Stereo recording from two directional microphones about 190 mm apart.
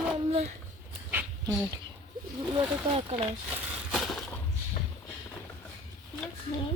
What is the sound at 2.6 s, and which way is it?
Speech, 30° right (ahead or behind).